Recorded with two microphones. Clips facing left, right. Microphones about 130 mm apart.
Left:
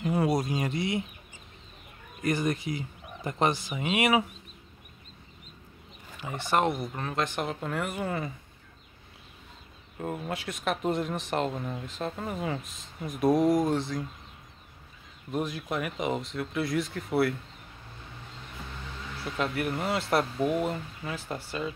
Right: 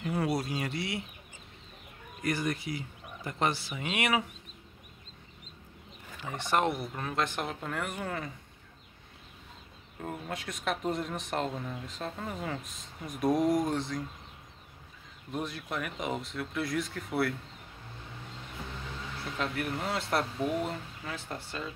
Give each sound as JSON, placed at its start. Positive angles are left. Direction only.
{"t": 0.0, "sound": "a sound", "side_deg": 15}
{"t": 2.2, "sound": "speech", "side_deg": 20}
{"t": 6.2, "sound": "speech", "side_deg": 5}
{"t": 9.9, "sound": "speech", "side_deg": 5}
{"t": 15.3, "sound": "speech", "side_deg": 10}
{"t": 19.3, "sound": "speech", "side_deg": 5}